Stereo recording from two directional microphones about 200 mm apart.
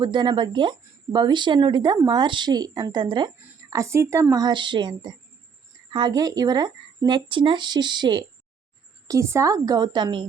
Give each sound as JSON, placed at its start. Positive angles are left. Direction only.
{"t": 0.0, "sound": "a woman's voice", "side_deg": -20}